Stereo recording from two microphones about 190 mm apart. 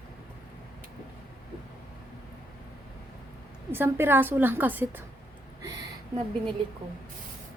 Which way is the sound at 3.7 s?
10° right (ahead or behind).